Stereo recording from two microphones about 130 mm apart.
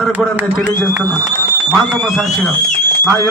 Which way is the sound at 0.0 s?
10° right (ahead or behind).